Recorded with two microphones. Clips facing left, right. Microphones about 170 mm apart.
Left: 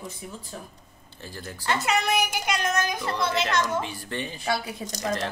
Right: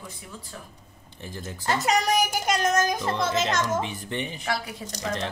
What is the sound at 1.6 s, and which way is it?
A woman's voice, 40° right (ahead or behind).